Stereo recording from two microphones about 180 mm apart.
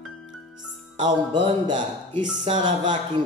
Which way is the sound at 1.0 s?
25° right (ahead or behind).